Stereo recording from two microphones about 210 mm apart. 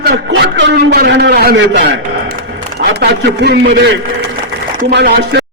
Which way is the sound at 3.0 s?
55° right (ahead or behind).